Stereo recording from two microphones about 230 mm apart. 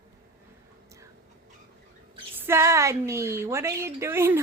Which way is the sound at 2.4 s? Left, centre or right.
Centre.